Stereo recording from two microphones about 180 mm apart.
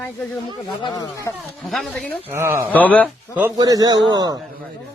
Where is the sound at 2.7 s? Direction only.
10° left (ahead or behind).